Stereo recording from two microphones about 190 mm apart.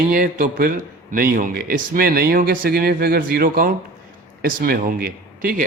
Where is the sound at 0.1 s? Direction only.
45° right (ahead or behind).